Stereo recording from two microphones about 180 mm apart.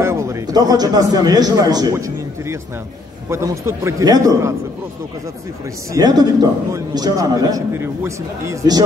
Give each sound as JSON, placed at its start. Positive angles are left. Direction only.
{"t": 0.0, "sound": "a man's voice", "side_deg": -15}
{"t": 5.9, "sound": "a man's voice", "side_deg": -20}